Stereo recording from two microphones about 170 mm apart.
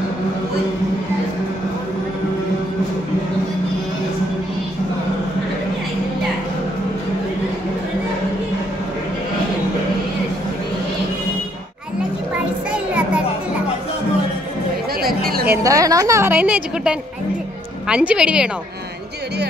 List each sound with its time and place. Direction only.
12.7 s music: 10° right (ahead or behind)
15.0 s chatter: 60° right (ahead or behind)
15.4 s a woman's voice: 15° right (ahead or behind)